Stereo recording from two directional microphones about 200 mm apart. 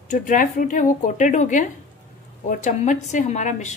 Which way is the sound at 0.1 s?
40° left (ahead or behind).